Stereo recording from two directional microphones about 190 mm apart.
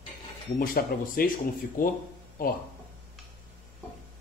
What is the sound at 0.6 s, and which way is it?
Speech, 50° left (ahead or behind).